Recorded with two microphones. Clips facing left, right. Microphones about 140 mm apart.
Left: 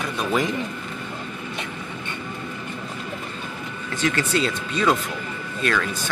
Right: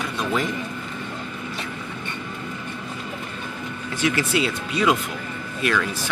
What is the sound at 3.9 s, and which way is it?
Speech, 10° right (ahead or behind).